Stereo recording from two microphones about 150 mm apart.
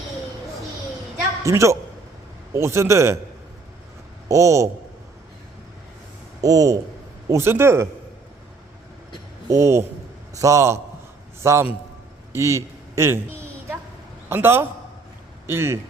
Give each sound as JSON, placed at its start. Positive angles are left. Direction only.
{"t": 1.5, "sound": "a man's voice", "side_deg": -20}
{"t": 4.3, "sound": "a man's voice", "side_deg": -20}
{"t": 6.4, "sound": "a man's voice", "side_deg": -20}
{"t": 9.5, "sound": "a man's voice", "side_deg": -20}
{"t": 14.3, "sound": "a man's voice", "side_deg": -15}